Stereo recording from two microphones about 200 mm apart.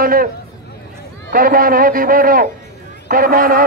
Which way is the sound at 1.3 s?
45° right (ahead or behind).